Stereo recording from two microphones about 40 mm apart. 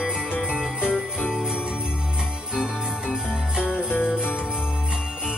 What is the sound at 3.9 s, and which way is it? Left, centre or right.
Jingle bell, left.